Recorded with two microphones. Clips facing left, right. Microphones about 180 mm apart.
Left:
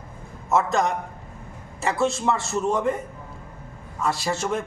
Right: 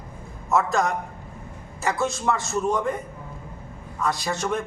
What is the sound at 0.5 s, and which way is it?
Speech, centre (ahead or behind).